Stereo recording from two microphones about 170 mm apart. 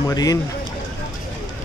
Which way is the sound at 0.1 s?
20° left (ahead or behind).